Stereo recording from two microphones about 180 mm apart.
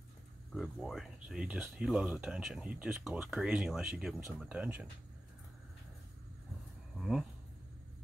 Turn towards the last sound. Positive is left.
turn(degrees=-5)  # may be behind; listen again after turning